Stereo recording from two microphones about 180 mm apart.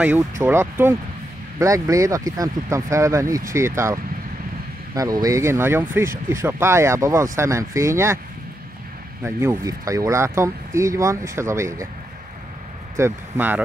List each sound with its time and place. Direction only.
0.4 s speech: 15° right (ahead or behind)
9.2 s speech: 15° right (ahead or behind)
12.9 s speech: 15° right (ahead or behind)